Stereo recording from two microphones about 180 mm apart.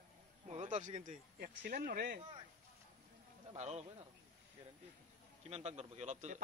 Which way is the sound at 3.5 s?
40° right (ahead or behind).